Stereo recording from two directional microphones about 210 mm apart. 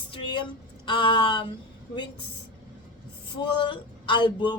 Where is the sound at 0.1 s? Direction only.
20° left (ahead or behind).